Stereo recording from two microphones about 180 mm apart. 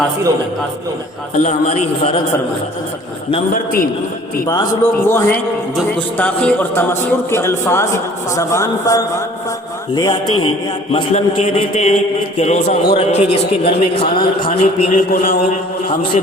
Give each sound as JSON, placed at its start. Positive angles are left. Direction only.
{"t": 1.4, "sound": "a man's voice", "side_deg": 40}
{"t": 3.5, "sound": "a man's voice", "side_deg": 50}
{"t": 4.4, "sound": "a man's voice", "side_deg": 20}
{"t": 11.1, "sound": "a man's voice", "side_deg": 35}
{"t": 12.6, "sound": "speech", "side_deg": 65}
{"t": 13.0, "sound": "a man's voice", "side_deg": 35}
{"t": 15.1, "sound": "a man's voice", "side_deg": 50}